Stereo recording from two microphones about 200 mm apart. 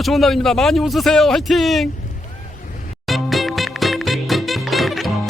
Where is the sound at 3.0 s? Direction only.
Centre (ahead or behind).